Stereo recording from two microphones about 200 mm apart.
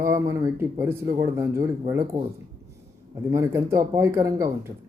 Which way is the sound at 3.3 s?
15° right (ahead or behind).